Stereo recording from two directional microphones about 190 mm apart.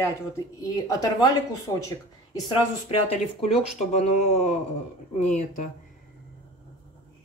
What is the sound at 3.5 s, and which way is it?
Speech, 35° left (ahead or behind).